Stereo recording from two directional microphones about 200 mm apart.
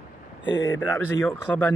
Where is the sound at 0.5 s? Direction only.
15° left (ahead or behind).